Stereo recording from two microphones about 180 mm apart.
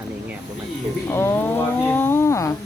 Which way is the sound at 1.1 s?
10° left (ahead or behind).